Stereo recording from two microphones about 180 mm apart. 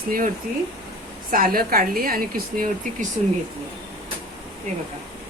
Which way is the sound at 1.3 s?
55° right (ahead or behind).